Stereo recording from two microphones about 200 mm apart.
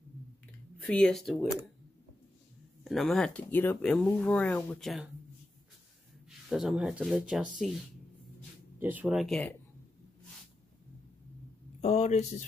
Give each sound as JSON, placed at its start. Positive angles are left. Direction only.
{"t": 0.7, "sound": "speech", "side_deg": 5}
{"t": 2.8, "sound": "speech", "side_deg": 0}
{"t": 6.5, "sound": "speech", "side_deg": -5}
{"t": 8.7, "sound": "speech", "side_deg": -10}
{"t": 11.8, "sound": "speech", "side_deg": 35}